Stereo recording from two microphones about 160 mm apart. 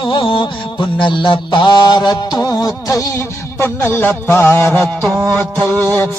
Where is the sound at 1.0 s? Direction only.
30° left (ahead or behind); by 4.8 s 10° left (ahead or behind).